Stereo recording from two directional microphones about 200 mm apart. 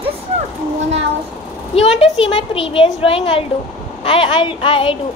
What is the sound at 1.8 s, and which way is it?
Speech, 30° left (ahead or behind).